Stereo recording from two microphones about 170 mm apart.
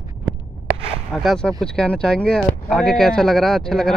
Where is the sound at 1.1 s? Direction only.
Centre (ahead or behind).